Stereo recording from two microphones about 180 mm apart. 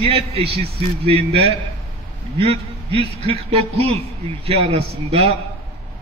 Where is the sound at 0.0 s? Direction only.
35° right (ahead or behind).